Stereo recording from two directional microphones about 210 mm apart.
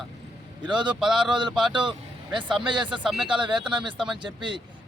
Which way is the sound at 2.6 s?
20° right (ahead or behind).